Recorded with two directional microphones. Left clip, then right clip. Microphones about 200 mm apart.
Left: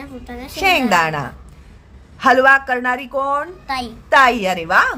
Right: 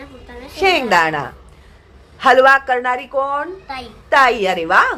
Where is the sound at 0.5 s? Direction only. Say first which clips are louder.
Right 1 dB; 20° left (ahead or behind).